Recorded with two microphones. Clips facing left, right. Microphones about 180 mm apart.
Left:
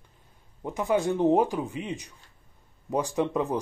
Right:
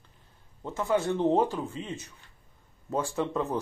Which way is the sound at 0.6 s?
15° left (ahead or behind).